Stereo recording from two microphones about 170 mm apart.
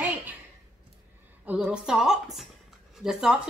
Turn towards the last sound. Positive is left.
turn(degrees=-5)  # may be behind; listen again after turning